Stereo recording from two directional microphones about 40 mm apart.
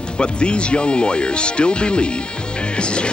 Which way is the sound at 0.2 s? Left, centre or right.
Left.